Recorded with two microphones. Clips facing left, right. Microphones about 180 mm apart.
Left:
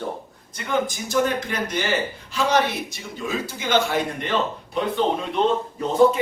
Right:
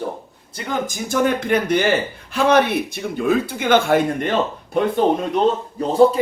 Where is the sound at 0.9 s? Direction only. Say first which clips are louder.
Right 3 dB; 50° right (ahead or behind).